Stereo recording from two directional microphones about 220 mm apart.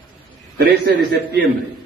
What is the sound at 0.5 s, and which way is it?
Speech, 45° right (ahead or behind).